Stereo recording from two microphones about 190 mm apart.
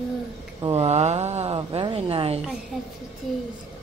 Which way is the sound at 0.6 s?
30° right (ahead or behind).